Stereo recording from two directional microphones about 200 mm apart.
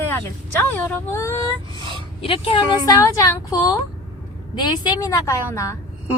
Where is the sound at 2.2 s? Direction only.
25° left (ahead or behind).